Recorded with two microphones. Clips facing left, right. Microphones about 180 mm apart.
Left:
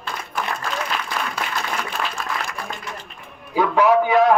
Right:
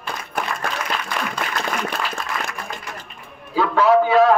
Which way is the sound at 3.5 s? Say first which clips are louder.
Right 1 dB; 15° left (ahead or behind).